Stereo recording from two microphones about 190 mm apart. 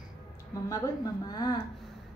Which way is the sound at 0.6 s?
15° left (ahead or behind).